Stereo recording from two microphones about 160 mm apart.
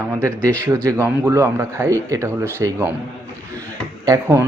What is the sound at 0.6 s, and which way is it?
Speech, 15° right (ahead or behind).